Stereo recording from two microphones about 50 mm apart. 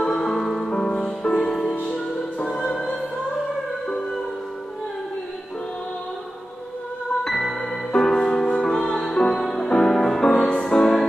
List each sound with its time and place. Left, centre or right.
0.0 s music: centre
0.7 s music: centre
7.2 s music: centre